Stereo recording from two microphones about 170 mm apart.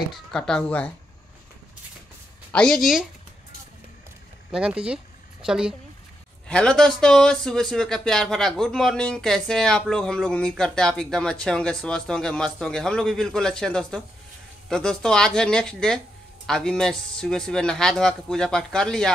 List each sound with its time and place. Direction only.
0.3 s speech: 5° left (ahead or behind)
2.5 s speech: 5° left (ahead or behind)
4.5 s speech: 5° right (ahead or behind)